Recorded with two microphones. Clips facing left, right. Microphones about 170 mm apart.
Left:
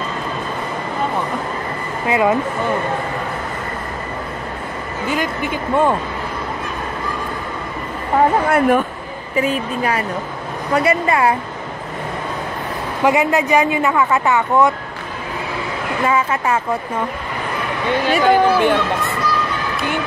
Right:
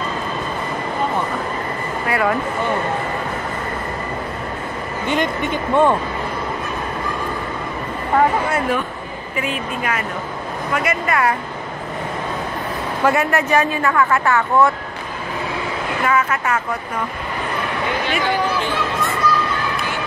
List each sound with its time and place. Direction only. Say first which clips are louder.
2.0 s speech: left 4 dB; 20° left (ahead or behind)
5.0 s speech: right 1 dB; 5° left (ahead or behind)
8.5 s speech: left 6 dB; 55° left (ahead or behind)
9.4 s a woman's voice: left 5 dB; 35° left (ahead or behind)
13.0 s speech: left 2 dB; 15° left (ahead or behind)
16.1 s a woman's voice: left 1 dB; 25° left (ahead or behind)
18.1 s speech: left 9 dB; 50° left (ahead or behind)